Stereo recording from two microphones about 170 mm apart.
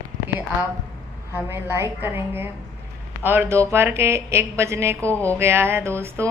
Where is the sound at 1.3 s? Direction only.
15° right (ahead or behind).